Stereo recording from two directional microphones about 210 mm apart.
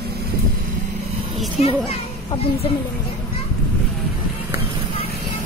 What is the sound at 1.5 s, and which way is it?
A child's voice, 30° left (ahead or behind).